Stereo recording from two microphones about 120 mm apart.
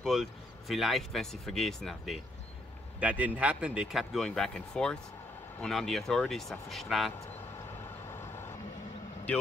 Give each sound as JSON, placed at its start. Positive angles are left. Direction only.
{"t": 0.0, "sound": "speech", "side_deg": 0}
{"t": 3.0, "sound": "speech", "side_deg": -10}
{"t": 8.1, "sound": "vehicle", "side_deg": 20}